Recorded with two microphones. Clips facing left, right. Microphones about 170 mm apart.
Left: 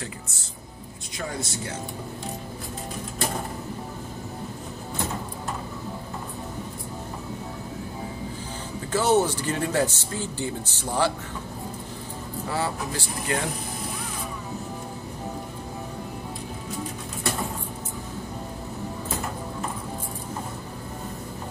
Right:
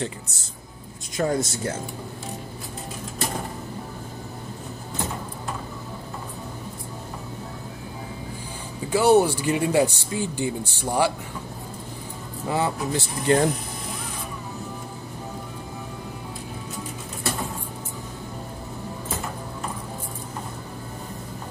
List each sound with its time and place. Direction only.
1.1 s speech: 45° right (ahead or behind)
8.9 s speech: 10° right (ahead or behind)
12.4 s speech: 20° right (ahead or behind)